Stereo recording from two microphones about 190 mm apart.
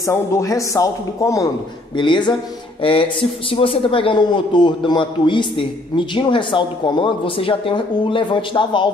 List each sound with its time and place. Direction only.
0.0 s a man's voice: 15° left (ahead or behind)